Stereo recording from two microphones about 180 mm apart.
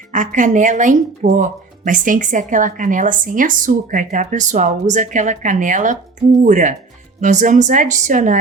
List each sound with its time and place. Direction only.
0.1 s speech: 45° right (ahead or behind)